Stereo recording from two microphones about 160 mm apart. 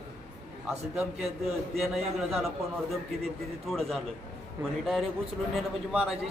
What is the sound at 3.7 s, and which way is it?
Speech, centre (ahead or behind).